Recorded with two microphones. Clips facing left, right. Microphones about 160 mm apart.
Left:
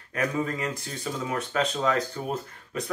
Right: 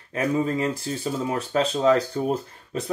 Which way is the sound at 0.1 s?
30° right (ahead or behind).